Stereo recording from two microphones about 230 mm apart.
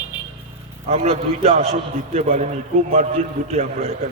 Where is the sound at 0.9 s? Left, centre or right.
Right.